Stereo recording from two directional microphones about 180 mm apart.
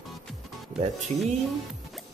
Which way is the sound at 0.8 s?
40° right (ahead or behind).